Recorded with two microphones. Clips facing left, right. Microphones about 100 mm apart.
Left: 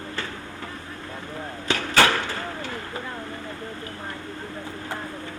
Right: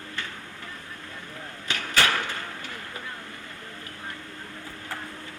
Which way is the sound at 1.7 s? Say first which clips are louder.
Left 5 dB; 30° left (ahead or behind).